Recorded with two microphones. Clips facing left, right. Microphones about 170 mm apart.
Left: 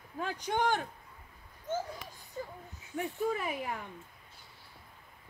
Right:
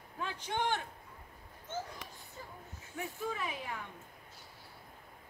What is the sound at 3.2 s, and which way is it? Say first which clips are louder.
Speech: left 6 dB; 50° left (ahead or behind).